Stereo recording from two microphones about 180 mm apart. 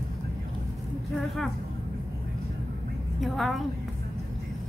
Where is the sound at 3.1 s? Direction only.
Centre (ahead or behind).